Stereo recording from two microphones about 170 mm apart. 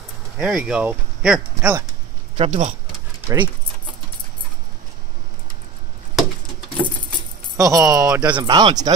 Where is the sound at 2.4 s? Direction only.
40° right (ahead or behind).